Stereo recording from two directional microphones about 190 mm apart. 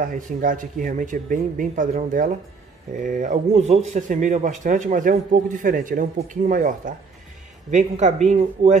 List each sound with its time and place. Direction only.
0.0 s a man's voice: 45° right (ahead or behind)